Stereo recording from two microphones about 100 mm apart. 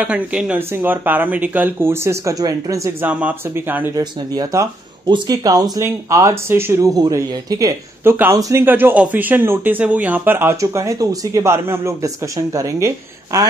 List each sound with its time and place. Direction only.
0.0 s speech: 10° right (ahead or behind); by 2.9 s 35° right (ahead or behind)
3.0 s speech: 15° right (ahead or behind)
3.9 s speech: 40° right (ahead or behind)
8.6 s speech: 20° right (ahead or behind); by 11.4 s 35° right (ahead or behind)
11.4 s speech: 25° right (ahead or behind)